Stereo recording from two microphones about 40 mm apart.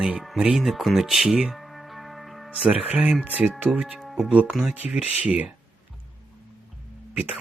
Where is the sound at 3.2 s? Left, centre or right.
Right.